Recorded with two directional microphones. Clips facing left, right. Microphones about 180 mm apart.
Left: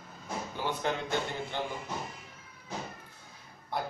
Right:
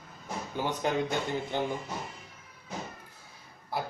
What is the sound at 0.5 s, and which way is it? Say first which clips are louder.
Speech: right 4 dB; 15° right (ahead or behind).